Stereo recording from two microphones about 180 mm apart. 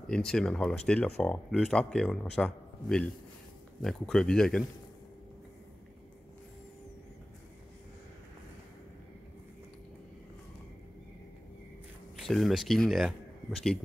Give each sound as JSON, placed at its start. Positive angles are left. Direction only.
{"t": 0.0, "sound": "speech", "side_deg": 5}
{"t": 12.2, "sound": "a man's voice", "side_deg": 0}